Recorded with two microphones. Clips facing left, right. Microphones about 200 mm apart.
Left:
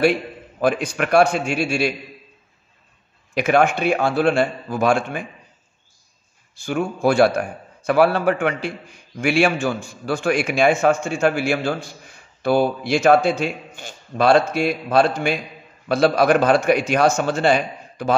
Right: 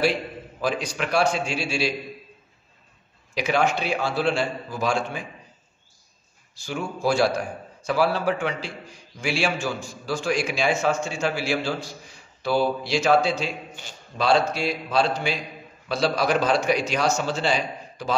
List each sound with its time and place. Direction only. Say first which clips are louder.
0.6 s a man's voice: left 6 dB; 55° left (ahead or behind)
3.3 s a man's voice: left 5 dB; 55° left (ahead or behind)
6.5 s a man's voice: left 7 dB; 55° left (ahead or behind)